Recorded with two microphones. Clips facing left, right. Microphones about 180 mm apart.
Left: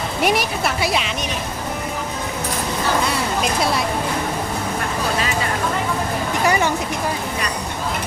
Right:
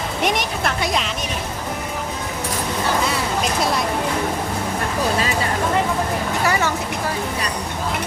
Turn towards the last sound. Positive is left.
turn(degrees=15)  # may be behind; listen again after turning